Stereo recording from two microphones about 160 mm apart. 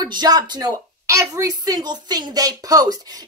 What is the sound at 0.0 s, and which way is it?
A woman's voice, 25° right (ahead or behind).